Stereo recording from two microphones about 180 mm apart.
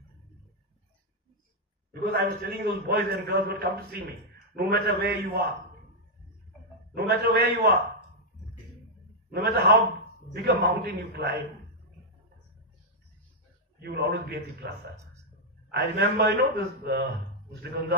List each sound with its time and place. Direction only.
2.1 s a man's voice: 60° right (ahead or behind)
6.9 s a man's voice: 60° right (ahead or behind)
9.3 s a man's voice: 60° right (ahead or behind)
13.7 s a man's voice: 60° right (ahead or behind)
15.7 s a man's voice: 65° right (ahead or behind)